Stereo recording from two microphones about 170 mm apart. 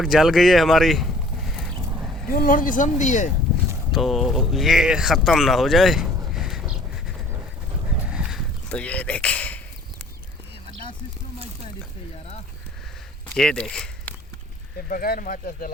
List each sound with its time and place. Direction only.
0.0 s speech: centre (ahead or behind)
2.3 s speech: 55° left (ahead or behind)
3.9 s speech: centre (ahead or behind)
6.3 s a sound: 5° right (ahead or behind)
13.3 s speech: 5° left (ahead or behind)
14.8 s speech: 60° left (ahead or behind)